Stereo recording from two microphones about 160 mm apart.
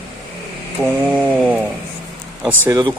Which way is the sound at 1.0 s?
10° right (ahead or behind).